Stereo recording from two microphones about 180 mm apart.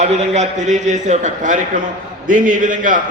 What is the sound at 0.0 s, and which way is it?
A man's voice, 40° right (ahead or behind).